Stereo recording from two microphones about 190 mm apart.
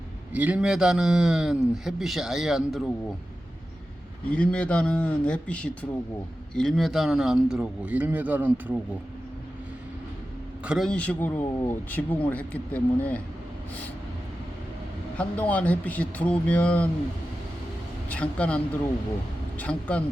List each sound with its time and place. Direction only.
0.3 s a man's voice: 5° right (ahead or behind)
4.3 s a man's voice: 5° left (ahead or behind)
10.6 s a man's voice: 5° right (ahead or behind)
15.2 s a man's voice: 10° left (ahead or behind)
18.1 s a man's voice: 5° left (ahead or behind)